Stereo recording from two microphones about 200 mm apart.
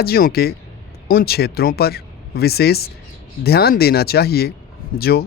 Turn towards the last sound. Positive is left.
turn(degrees=50)  # may be behind; listen again after turning